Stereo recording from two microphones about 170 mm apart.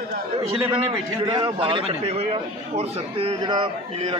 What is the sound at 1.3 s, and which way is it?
A man's voice, 25° right (ahead or behind).